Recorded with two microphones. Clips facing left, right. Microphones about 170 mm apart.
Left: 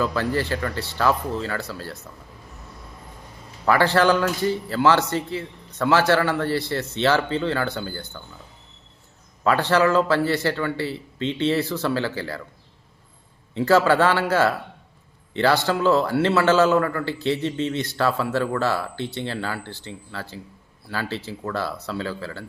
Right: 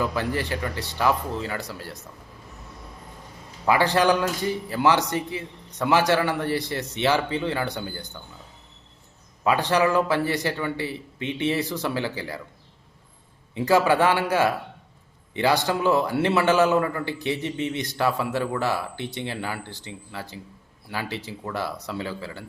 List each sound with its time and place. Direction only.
0.0 s a man's voice: 15° right (ahead or behind)
3.7 s a man's voice: 15° right (ahead or behind)
9.4 s a man's voice: 15° right (ahead or behind)
13.5 s a man's voice: 15° right (ahead or behind)